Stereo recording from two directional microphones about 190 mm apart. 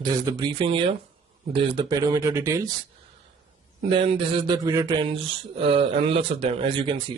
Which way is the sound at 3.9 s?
30° right (ahead or behind).